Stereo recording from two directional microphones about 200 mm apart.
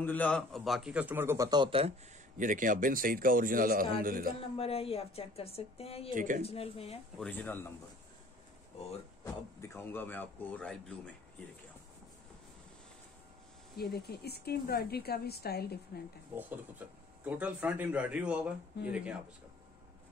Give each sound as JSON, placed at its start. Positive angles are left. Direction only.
{"t": 0.0, "sound": "a man's voice", "side_deg": 10}
{"t": 4.6, "sound": "speech", "side_deg": 30}
{"t": 6.1, "sound": "a man's voice", "side_deg": -40}
{"t": 6.4, "sound": "speech", "side_deg": 30}
{"t": 7.2, "sound": "speech", "side_deg": 10}
{"t": 9.2, "sound": "speech", "side_deg": 15}
{"t": 13.7, "sound": "speech", "side_deg": 50}
{"t": 16.3, "sound": "speech", "side_deg": -10}